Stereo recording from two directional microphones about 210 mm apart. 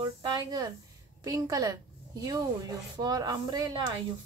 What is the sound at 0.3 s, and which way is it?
A woman's voice, 20° right (ahead or behind).